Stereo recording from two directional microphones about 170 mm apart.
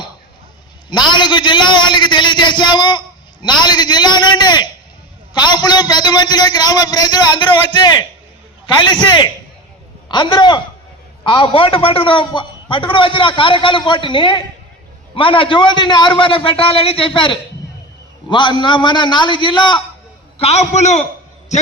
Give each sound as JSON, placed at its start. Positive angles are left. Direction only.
{"t": 0.9, "sound": "a man's voice", "side_deg": 25}
{"t": 20.4, "sound": "a man's voice", "side_deg": 40}